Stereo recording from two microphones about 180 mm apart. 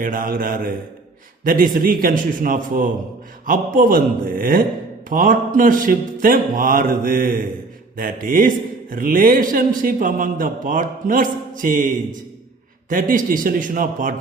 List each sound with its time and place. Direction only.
0.0 s a man's voice: 50° right (ahead or behind)
12.9 s a man's voice: 50° right (ahead or behind)